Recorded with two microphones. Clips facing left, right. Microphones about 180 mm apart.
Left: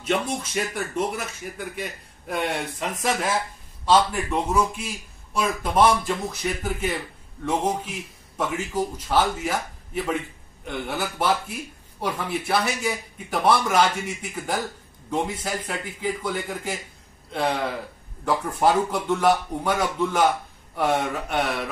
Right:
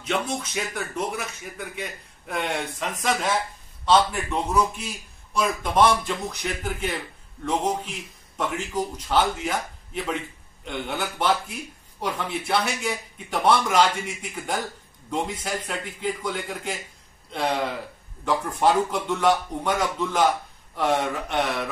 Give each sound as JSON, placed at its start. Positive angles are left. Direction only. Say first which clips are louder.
{"t": 0.1, "sound": "a man's voice", "louder": "left 2 dB", "side_deg": 5}
{"t": 18.2, "sound": "a man's voice", "louder": "left 1 dB", "side_deg": 5}